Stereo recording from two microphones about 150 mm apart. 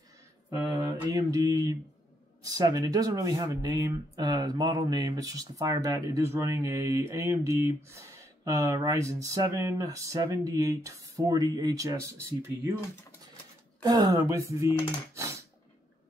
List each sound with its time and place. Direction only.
0.6 s mantra: 20° right (ahead or behind)
2.4 s speech: 25° right (ahead or behind)
13.8 s speech: 25° right (ahead or behind)